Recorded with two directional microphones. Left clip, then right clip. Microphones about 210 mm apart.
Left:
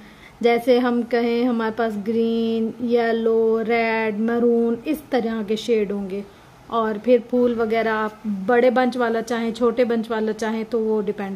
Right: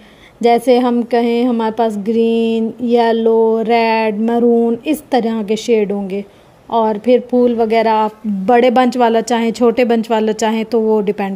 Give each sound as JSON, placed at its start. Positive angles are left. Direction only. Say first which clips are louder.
{"t": 0.4, "sound": "a woman's voice", "louder": "right 6 dB", "side_deg": -25}